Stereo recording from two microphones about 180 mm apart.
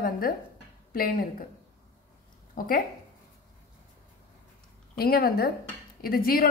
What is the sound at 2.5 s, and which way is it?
Speech, 50° left (ahead or behind).